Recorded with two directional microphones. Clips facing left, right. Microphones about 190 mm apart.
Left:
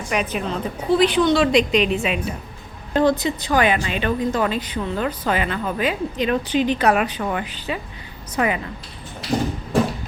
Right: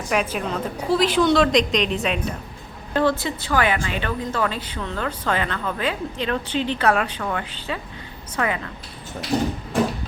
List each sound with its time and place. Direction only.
0.1 s a woman's voice: centre (ahead or behind)
2.9 s speech: 15° left (ahead or behind)